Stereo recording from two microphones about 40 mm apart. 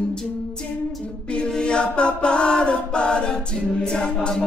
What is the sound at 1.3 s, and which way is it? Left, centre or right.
A capella, left.